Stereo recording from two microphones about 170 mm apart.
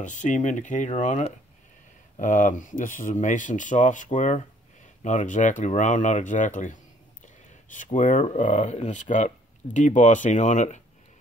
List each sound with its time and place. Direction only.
0.0 s speech: 45° left (ahead or behind)